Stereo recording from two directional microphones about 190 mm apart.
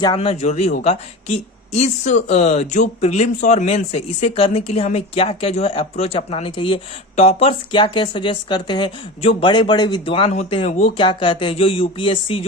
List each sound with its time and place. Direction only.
0.0 s speech: 25° left (ahead or behind)